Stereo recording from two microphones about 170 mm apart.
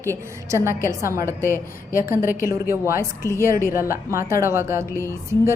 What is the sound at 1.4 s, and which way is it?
Speech, 15° left (ahead or behind).